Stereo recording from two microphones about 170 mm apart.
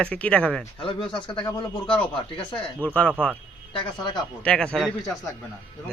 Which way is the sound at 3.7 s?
25° left (ahead or behind).